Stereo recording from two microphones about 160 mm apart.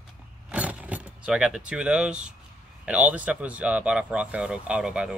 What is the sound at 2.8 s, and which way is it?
Speech, 10° right (ahead or behind).